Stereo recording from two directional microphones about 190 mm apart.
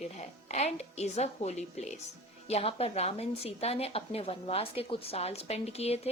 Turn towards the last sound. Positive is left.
turn(degrees=35)  # may be behind; listen again after turning